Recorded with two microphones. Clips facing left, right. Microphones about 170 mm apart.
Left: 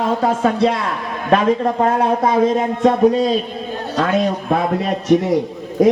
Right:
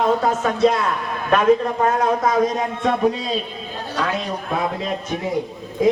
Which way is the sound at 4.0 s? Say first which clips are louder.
Left 7 dB; 55° left (ahead or behind).